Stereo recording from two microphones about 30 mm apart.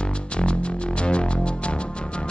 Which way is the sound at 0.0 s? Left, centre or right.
Left.